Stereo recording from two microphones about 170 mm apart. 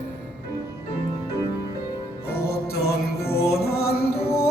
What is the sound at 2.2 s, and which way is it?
Music, 65° left (ahead or behind).